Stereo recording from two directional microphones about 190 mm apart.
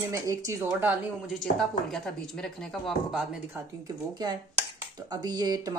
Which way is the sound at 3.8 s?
20° right (ahead or behind).